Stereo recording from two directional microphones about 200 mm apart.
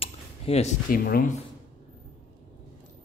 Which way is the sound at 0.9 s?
45° left (ahead or behind).